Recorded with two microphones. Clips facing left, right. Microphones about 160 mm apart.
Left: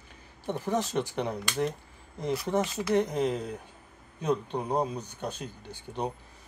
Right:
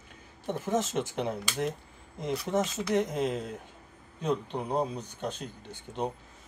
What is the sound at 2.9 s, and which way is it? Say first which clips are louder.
Speech: left 2 dB; 20° right (ahead or behind).